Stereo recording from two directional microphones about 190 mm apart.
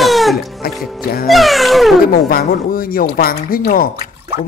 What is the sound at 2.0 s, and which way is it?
Speech, 50° left (ahead or behind).